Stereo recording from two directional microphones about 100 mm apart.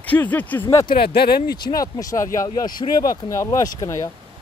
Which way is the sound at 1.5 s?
40° left (ahead or behind).